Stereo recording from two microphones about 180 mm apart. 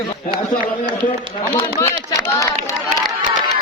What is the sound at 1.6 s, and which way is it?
Run, 15° left (ahead or behind).